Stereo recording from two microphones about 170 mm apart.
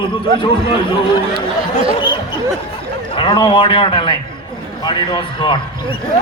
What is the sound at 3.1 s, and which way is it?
A man's voice, 30° left (ahead or behind).